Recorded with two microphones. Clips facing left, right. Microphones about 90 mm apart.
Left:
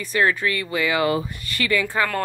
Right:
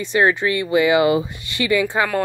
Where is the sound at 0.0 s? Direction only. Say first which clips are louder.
Right 4 dB; 25° right (ahead or behind).